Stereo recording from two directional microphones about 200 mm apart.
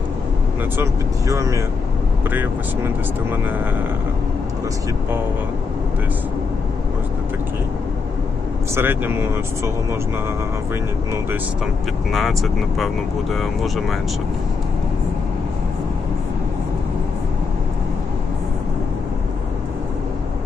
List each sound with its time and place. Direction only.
1.3 s speech: 15° right (ahead or behind)
8.7 s speech: 10° right (ahead or behind)
11.1 s speech: 10° right (ahead or behind)